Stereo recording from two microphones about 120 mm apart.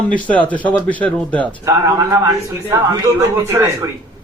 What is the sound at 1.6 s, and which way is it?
A man's voice, 25° right (ahead or behind).